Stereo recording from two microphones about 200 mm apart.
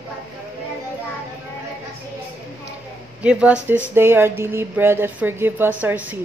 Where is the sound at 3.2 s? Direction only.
5° right (ahead or behind).